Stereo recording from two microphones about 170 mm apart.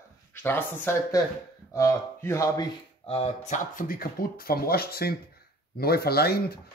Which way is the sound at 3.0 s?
35° left (ahead or behind).